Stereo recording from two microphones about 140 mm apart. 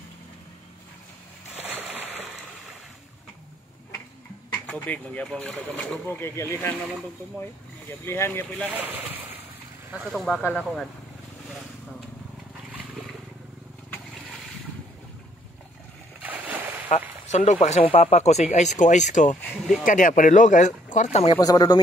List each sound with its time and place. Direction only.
1.7 s splash: 15° right (ahead or behind)
4.6 s speech: 10° left (ahead or behind)
8.0 s speech: 15° left (ahead or behind)
8.6 s speech: 10° right (ahead or behind)
10.1 s speech: centre (ahead or behind)
16.2 s boat: 10° right (ahead or behind)
17.3 s speech: 60° left (ahead or behind)
19.8 s speech: 70° left (ahead or behind)
21.3 s speech: 25° left (ahead or behind)